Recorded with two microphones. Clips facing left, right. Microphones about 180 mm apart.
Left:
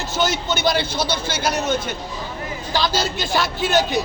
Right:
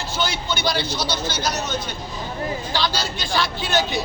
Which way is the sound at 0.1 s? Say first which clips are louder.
Left 4 dB; 45° left (ahead or behind).